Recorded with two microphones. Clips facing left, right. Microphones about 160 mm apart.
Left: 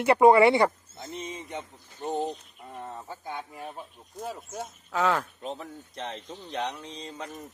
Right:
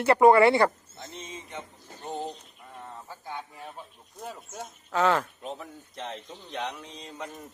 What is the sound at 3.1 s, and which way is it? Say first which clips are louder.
Speech: left 2 dB; 15° left (ahead or behind).